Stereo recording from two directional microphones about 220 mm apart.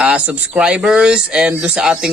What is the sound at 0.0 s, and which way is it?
Speech, 5° right (ahead or behind).